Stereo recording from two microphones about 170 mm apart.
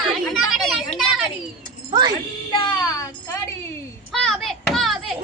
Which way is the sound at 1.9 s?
25° right (ahead or behind).